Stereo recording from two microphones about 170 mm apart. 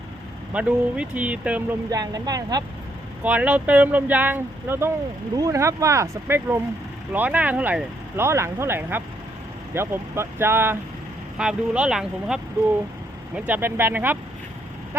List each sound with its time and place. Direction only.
0.5 s speech: 5° right (ahead or behind)
1.9 s speech: 20° right (ahead or behind)
3.2 s speech: 10° right (ahead or behind)